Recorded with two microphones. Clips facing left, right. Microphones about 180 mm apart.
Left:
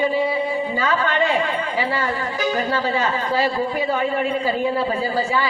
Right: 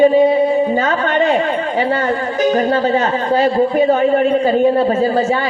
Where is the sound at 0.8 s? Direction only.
40° right (ahead or behind).